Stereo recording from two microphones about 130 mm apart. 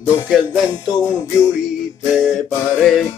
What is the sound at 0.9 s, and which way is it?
Music, centre (ahead or behind).